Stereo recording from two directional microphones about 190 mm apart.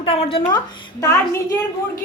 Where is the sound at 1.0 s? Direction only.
15° left (ahead or behind).